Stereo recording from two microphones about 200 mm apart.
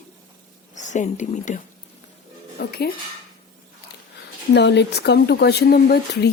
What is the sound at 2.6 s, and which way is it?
Speech, 50° left (ahead or behind).